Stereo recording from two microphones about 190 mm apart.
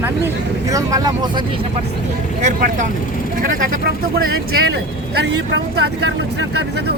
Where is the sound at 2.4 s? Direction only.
40° right (ahead or behind).